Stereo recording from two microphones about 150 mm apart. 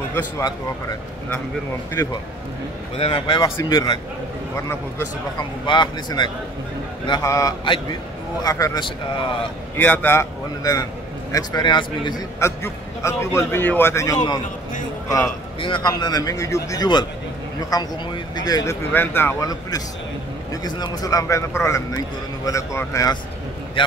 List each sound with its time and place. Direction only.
0.1 s a man's voice: 25° left (ahead or behind)
3.0 s a man's voice: 35° left (ahead or behind)
3.4 s a man's voice: 25° left (ahead or behind)
4.6 s a man's voice: 20° left (ahead or behind)
5.7 s a man's voice: 30° left (ahead or behind)
9.8 s a man's voice: 10° left (ahead or behind)
10.6 s a man's voice: 25° left (ahead or behind)
12.4 s a man's voice: 20° left (ahead or behind)
15.6 s a man's voice: 30° left (ahead or behind); by 19.5 s 15° left (ahead or behind)
20.6 s a man's voice: 25° left (ahead or behind)